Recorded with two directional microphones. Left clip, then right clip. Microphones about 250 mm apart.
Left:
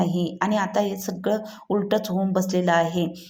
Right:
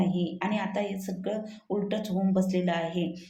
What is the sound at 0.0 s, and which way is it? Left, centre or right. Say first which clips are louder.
A woman's voice: left 6 dB; left.